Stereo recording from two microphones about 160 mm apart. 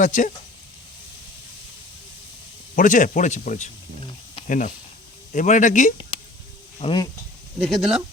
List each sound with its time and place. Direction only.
0.0 s speech: 55° left (ahead or behind)
2.7 s speech: 55° left (ahead or behind)
6.1 s a sound: 35° left (ahead or behind)
6.7 s speech: 35° left (ahead or behind)
7.6 s speech: centre (ahead or behind)